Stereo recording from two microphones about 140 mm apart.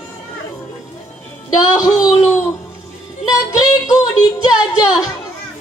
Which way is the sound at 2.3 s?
20° left (ahead or behind).